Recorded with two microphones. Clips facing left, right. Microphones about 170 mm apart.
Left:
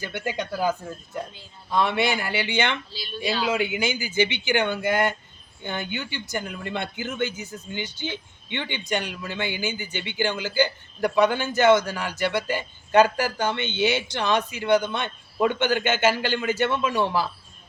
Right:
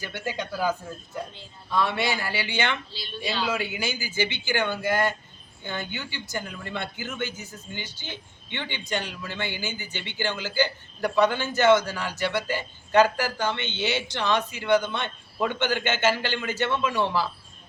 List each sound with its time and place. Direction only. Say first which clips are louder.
0.0 s speech: left 3 dB; 15° left (ahead or behind)
1.7 s speech: left 3 dB; 20° left (ahead or behind)
3.4 s speech: left 5 dB; 20° left (ahead or behind)